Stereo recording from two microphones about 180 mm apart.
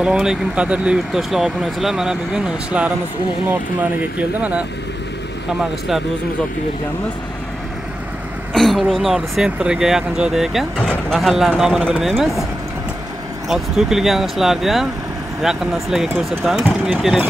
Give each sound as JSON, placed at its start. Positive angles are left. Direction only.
{"t": 0.0, "sound": "speech", "side_deg": -5}
{"t": 4.2, "sound": "speech", "side_deg": -10}
{"t": 8.5, "sound": "speech", "side_deg": 0}
{"t": 13.5, "sound": "speech", "side_deg": 0}